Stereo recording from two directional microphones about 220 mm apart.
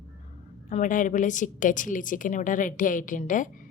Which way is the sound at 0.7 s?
35° left (ahead or behind).